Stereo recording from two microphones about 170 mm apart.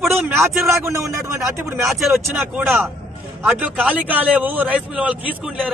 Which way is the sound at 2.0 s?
Centre (ahead or behind).